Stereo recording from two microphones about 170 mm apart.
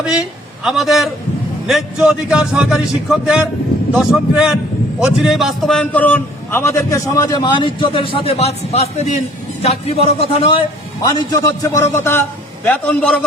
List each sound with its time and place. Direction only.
0.0 s a man's voice: 5° right (ahead or behind)
3.9 s a man's voice: 5° right (ahead or behind); by 10.6 s 30° left (ahead or behind)
11.0 s a man's voice: 20° left (ahead or behind)